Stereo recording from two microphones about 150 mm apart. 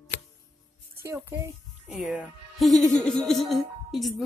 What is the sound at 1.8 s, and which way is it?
A woman's voice, 5° right (ahead or behind).